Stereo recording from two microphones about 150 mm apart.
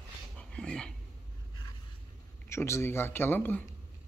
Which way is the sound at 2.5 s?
15° left (ahead or behind).